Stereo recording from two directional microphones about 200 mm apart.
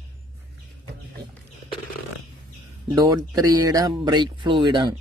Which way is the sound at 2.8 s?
20° right (ahead or behind).